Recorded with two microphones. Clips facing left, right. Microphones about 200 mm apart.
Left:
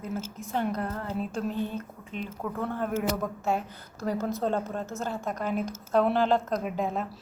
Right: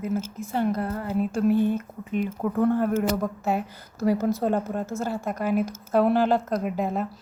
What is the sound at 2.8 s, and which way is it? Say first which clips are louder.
Speech: right 5 dB; 5° left (ahead or behind).